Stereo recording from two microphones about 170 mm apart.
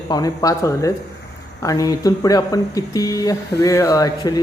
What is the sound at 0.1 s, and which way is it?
A man's voice, 20° left (ahead or behind).